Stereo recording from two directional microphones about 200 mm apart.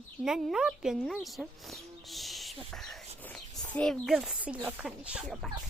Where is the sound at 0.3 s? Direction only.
5° right (ahead or behind).